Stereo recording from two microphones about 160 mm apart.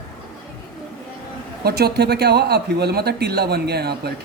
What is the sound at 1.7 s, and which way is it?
Speech, 85° right.